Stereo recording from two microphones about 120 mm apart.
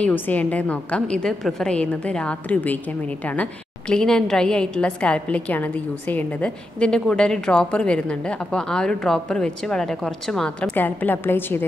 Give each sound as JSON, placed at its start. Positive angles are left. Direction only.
{"t": 0.0, "sound": "a woman's voice", "side_deg": 15}
{"t": 3.9, "sound": "a woman's voice", "side_deg": 5}
{"t": 10.7, "sound": "a woman's voice", "side_deg": 15}